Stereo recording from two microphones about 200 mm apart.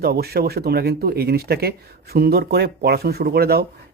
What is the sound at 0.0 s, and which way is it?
Speech, 50° right (ahead or behind).